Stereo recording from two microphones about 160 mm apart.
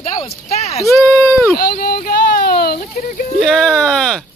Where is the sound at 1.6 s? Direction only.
70° left (ahead or behind).